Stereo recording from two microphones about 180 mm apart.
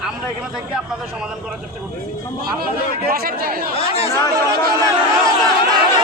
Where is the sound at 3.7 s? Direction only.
30° left (ahead or behind).